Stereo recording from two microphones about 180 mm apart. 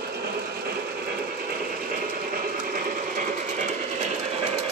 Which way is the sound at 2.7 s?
45° right (ahead or behind).